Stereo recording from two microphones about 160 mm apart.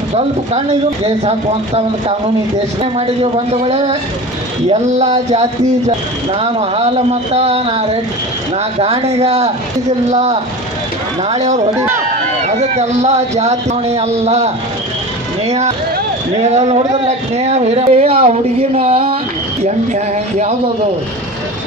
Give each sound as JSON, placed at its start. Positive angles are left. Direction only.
{"t": 0.1, "sound": "speech", "side_deg": -40}
{"t": 2.8, "sound": "speech", "side_deg": -40}
{"t": 11.7, "sound": "speech", "side_deg": -15}
{"t": 12.4, "sound": "speech", "side_deg": -45}